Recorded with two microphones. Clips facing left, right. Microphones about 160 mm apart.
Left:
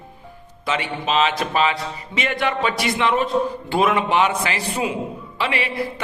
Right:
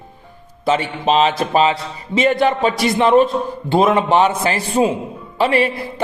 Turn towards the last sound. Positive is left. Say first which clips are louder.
# right 8 dB
turn(degrees=-40)  # may be behind; listen again after turning